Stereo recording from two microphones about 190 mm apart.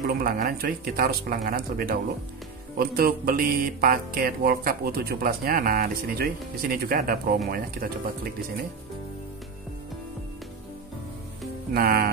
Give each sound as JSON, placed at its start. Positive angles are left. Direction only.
{"t": 0.0, "sound": "mantra", "side_deg": -50}
{"t": 11.7, "sound": "mantra", "side_deg": -55}